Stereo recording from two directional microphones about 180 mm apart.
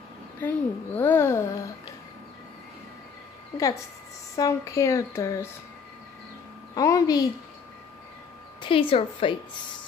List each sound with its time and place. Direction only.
0.4 s a child's voice: 10° left (ahead or behind)
4.4 s a child's voice: 15° left (ahead or behind)
6.7 s a woman's voice: 20° left (ahead or behind)
8.5 s a woman's voice: 30° left (ahead or behind)